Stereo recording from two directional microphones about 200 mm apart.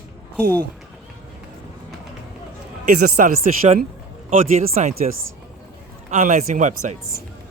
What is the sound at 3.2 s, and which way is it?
Speech, 40° right (ahead or behind).